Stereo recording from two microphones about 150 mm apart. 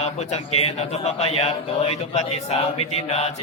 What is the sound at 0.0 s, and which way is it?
A man's voice, 45° left (ahead or behind).